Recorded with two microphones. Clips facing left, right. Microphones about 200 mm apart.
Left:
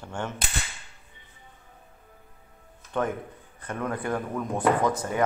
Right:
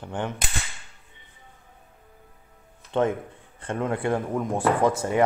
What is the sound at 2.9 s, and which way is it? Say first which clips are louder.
Speech: right 5 dB; 25° right (ahead or behind).